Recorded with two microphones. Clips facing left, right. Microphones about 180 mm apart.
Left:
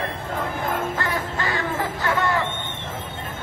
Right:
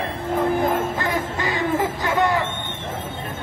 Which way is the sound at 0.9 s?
20° right (ahead or behind).